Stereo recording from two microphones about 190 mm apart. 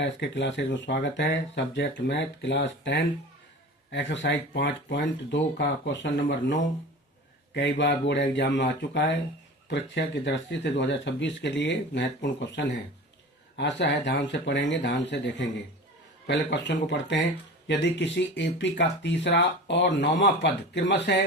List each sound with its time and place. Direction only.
0.0 s speech: 70° left (ahead or behind)